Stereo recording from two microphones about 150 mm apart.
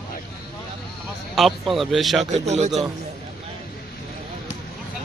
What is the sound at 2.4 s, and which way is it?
Speech, 50° right (ahead or behind).